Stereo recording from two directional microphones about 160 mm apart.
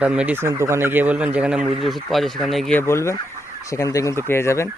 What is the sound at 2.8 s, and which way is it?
Speech, 15° left (ahead or behind).